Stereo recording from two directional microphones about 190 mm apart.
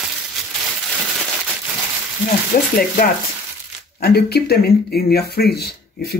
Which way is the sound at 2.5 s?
45° left (ahead or behind).